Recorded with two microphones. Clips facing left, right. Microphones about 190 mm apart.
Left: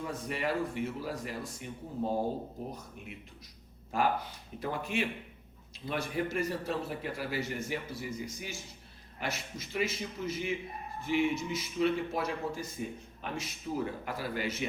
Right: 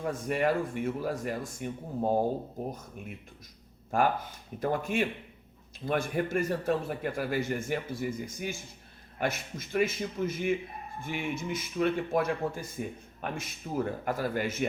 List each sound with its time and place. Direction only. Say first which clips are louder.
0.0 s a man's voice: right 6 dB; 50° right (ahead or behind)
3.9 s a man's voice: right 3 dB; 50° right (ahead or behind)